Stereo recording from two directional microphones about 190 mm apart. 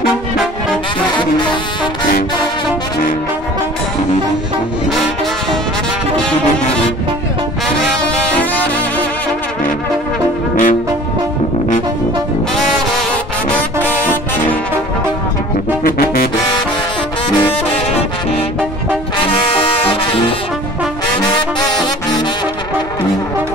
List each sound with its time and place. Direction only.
1.1 s music: 25° left (ahead or behind)
7.6 s brass instrument: centre (ahead or behind)
10.5 s brass instrument: 45° left (ahead or behind)
19.1 s trombone: 25° left (ahead or behind)